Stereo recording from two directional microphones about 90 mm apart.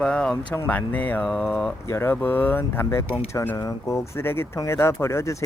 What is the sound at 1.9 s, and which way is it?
Speech, 30° left (ahead or behind).